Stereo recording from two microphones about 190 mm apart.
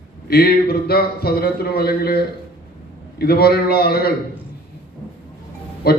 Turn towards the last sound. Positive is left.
turn(degrees=55)  # may be behind; listen again after turning